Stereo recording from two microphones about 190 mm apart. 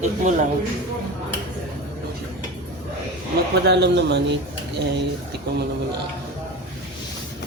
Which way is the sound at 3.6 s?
65° right (ahead or behind).